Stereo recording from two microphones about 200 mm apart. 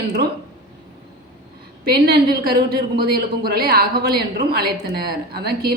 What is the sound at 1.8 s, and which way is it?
A woman's voice, 50° right (ahead or behind).